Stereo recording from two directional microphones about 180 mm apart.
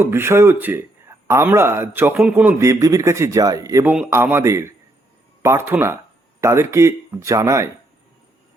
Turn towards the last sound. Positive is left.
turn(degrees=-15)  # may be behind; listen again after turning